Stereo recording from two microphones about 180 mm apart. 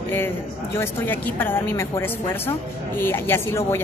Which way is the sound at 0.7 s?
10° left (ahead or behind).